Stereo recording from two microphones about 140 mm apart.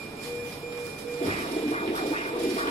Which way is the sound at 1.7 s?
50° left (ahead or behind).